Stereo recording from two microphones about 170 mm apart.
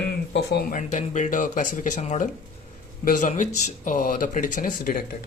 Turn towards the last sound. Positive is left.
turn(degrees=55)  # may be behind; listen again after turning